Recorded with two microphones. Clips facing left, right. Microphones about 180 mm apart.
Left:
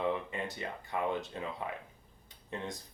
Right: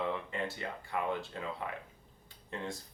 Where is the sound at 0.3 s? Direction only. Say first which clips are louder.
Right 1 dB; 20° left (ahead or behind).